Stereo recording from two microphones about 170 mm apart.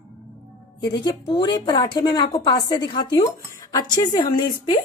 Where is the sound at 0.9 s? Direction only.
25° left (ahead or behind).